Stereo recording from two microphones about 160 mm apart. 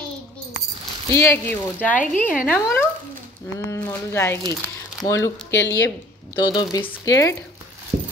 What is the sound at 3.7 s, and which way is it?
A woman's voice, 15° left (ahead or behind).